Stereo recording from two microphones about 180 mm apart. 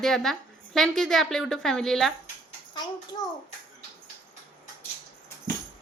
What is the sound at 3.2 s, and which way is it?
Speech, 20° left (ahead or behind).